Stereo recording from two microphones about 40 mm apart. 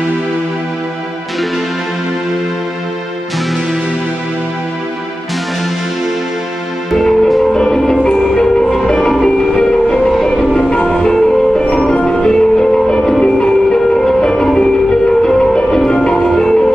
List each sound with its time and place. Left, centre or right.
6.9 s music: centre
9.5 s music: left